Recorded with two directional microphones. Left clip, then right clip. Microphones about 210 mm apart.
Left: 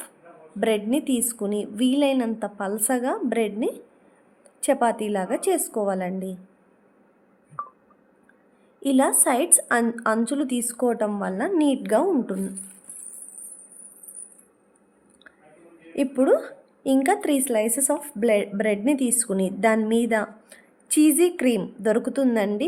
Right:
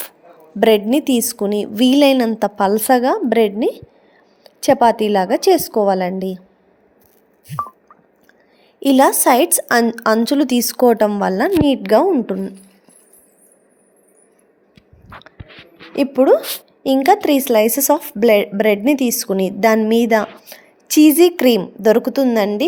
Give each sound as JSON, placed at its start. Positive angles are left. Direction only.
{"t": 0.6, "sound": "speech", "side_deg": -30}
{"t": 8.8, "sound": "speech", "side_deg": -25}
{"t": 16.0, "sound": "a woman's voice", "side_deg": -20}